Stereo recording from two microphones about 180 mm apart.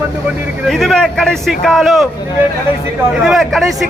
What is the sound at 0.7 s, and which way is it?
A man's voice, centre (ahead or behind).